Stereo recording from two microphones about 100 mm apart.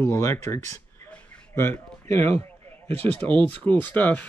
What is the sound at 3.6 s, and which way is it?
Speech, 20° left (ahead or behind).